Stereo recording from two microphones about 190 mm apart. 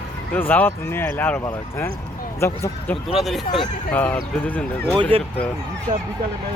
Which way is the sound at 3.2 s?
Centre (ahead or behind).